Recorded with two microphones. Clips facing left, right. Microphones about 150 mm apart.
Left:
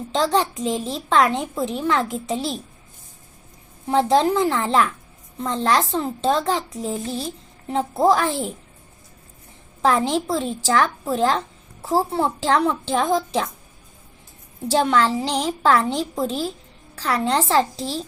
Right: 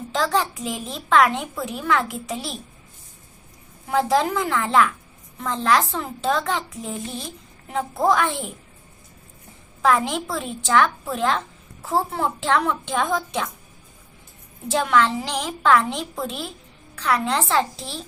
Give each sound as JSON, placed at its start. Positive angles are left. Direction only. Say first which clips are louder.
{"t": 0.1, "sound": "a woman's voice", "louder": "left 2 dB", "side_deg": 30}
{"t": 3.8, "sound": "a woman's voice", "louder": "left 3 dB", "side_deg": 30}
{"t": 9.8, "sound": "a woman's voice", "louder": "left 1 dB", "side_deg": 30}
{"t": 14.7, "sound": "a woman's voice", "louder": "left 1 dB", "side_deg": 30}